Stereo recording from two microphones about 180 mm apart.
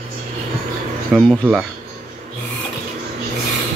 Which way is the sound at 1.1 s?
Centre (ahead or behind).